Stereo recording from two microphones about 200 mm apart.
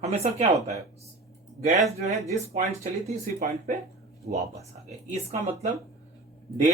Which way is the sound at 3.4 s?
40° right (ahead or behind).